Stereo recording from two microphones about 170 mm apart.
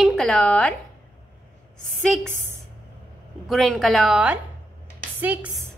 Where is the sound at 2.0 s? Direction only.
5° left (ahead or behind).